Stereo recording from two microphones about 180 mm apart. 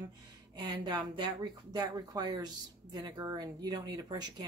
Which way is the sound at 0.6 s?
25° right (ahead or behind).